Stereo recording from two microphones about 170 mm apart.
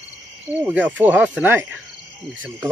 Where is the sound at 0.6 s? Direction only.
10° right (ahead or behind).